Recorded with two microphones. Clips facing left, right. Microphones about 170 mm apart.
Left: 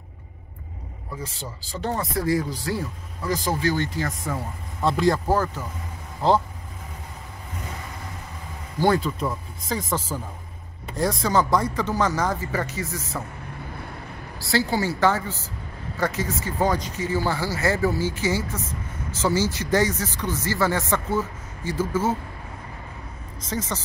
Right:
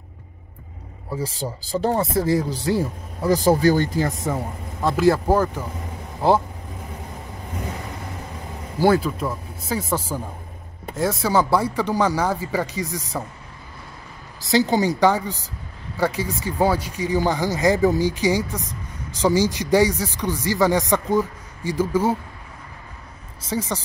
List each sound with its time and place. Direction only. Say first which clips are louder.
1.1 s speech: right 8 dB; 35° right (ahead or behind)
4.8 s speech: right 3 dB; 5° right (ahead or behind)
8.7 s speech: right 3 dB; 5° right (ahead or behind)
14.4 s speech: right 5 dB; 20° right (ahead or behind)
23.4 s speech: right 3 dB; 10° right (ahead or behind)